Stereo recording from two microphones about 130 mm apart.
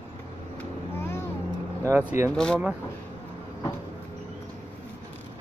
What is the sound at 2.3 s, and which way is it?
Speech, 5° left (ahead or behind).